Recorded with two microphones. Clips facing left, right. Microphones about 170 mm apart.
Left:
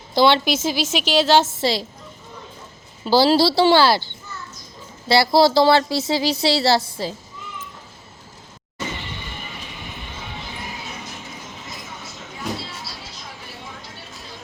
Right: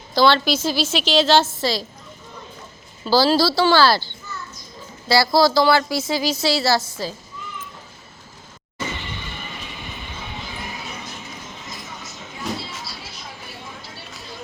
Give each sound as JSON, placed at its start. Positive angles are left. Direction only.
{"t": 0.1, "sound": "a woman's voice", "side_deg": 20}
{"t": 1.5, "sound": "speech", "side_deg": 25}
{"t": 3.0, "sound": "speech", "side_deg": 20}
{"t": 5.0, "sound": "speech", "side_deg": 25}